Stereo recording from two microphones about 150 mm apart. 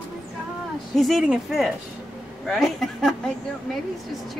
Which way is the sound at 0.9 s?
Centre (ahead or behind).